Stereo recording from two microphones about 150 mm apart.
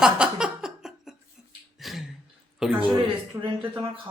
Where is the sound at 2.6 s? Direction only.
Centre (ahead or behind).